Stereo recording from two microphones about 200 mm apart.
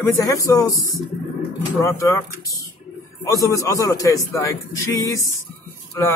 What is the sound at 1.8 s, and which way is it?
Speech, 15° left (ahead or behind).